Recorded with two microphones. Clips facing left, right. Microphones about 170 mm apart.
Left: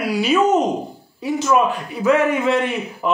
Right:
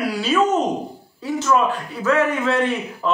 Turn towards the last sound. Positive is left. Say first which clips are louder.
# even
turn(degrees=15)  # may be behind; listen again after turning